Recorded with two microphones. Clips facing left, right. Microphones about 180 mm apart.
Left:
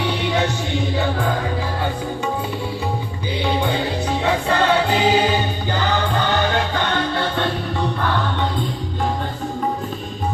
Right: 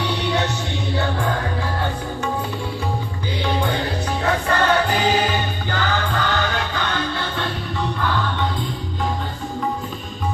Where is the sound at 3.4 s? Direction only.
15° left (ahead or behind).